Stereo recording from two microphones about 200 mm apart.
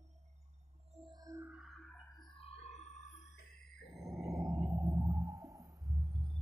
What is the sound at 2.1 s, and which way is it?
Music, 25° left (ahead or behind).